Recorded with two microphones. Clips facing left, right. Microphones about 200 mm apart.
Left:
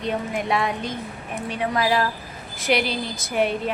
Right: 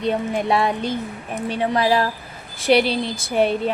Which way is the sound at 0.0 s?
30° right (ahead or behind).